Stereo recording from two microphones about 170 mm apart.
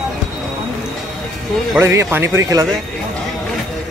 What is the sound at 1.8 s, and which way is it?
Speech, 15° right (ahead or behind).